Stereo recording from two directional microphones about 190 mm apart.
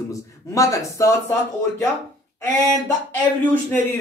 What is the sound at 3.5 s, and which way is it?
Speech, 10° left (ahead or behind).